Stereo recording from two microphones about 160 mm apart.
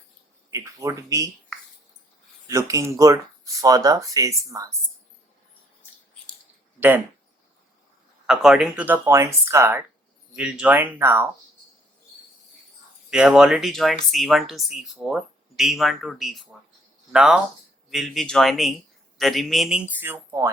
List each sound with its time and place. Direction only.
0.5 s speech: 20° right (ahead or behind)
2.5 s speech: 20° right (ahead or behind)
6.7 s speech: 10° right (ahead or behind)
8.3 s speech: 5° right (ahead or behind)
10.3 s speech: 5° right (ahead or behind)
13.1 s a man's voice: 5° right (ahead or behind)